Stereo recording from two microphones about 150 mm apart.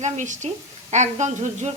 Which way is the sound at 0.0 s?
50° right (ahead or behind).